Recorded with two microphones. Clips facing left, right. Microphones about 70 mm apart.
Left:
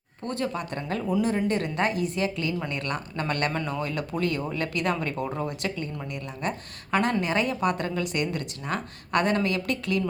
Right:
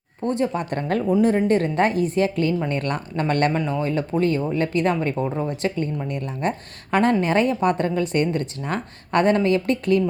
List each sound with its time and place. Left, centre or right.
0.2 s speech: right
0.6 s a woman's voice: right